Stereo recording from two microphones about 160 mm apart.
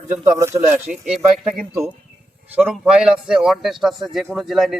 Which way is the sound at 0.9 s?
5° right (ahead or behind).